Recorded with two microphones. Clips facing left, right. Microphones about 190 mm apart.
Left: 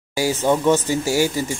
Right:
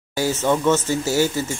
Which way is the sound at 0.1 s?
10° left (ahead or behind).